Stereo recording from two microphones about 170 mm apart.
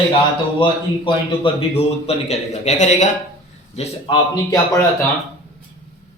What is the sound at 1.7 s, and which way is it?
A man's voice, 40° left (ahead or behind).